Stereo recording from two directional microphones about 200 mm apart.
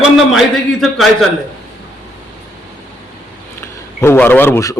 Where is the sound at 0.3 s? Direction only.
Centre (ahead or behind).